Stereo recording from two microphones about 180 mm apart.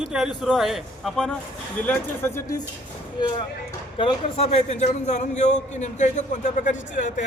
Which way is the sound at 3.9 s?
35° left (ahead or behind).